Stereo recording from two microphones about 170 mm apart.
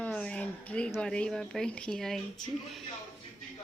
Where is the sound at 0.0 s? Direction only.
5° left (ahead or behind).